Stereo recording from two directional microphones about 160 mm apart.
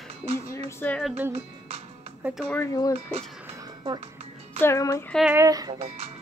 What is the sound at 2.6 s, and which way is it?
Speech, 20° left (ahead or behind).